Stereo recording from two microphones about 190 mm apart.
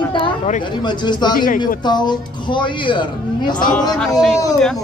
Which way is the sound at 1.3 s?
45° left (ahead or behind).